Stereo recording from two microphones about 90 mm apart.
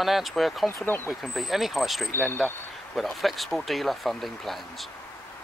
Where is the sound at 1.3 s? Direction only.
Centre (ahead or behind).